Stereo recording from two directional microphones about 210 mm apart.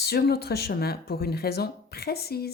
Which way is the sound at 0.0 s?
50° left (ahead or behind).